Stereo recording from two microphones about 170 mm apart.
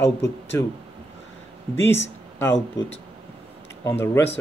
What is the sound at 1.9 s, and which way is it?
Speech, 15° left (ahead or behind).